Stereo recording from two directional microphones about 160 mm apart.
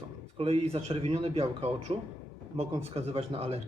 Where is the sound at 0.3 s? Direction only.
40° right (ahead or behind).